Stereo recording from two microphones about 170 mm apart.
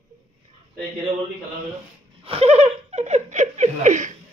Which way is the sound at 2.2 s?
35° right (ahead or behind).